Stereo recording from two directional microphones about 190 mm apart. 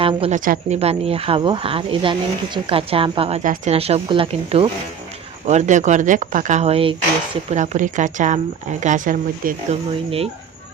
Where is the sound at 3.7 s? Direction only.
30° right (ahead or behind).